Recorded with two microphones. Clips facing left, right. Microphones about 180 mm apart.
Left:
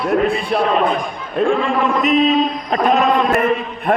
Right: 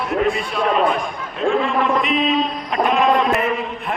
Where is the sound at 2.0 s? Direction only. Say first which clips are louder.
Left 5 dB; 40° left (ahead or behind).